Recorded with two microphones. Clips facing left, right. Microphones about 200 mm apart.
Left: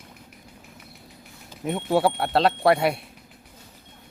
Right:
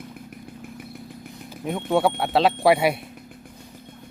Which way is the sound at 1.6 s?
Centre (ahead or behind).